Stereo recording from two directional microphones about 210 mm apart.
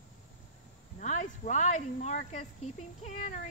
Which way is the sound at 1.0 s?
35° left (ahead or behind).